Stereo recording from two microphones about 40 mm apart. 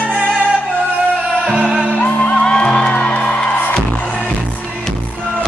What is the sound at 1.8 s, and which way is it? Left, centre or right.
Music, left.